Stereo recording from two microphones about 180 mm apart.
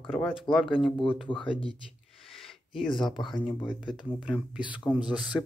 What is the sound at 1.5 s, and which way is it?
Speech, 30° left (ahead or behind).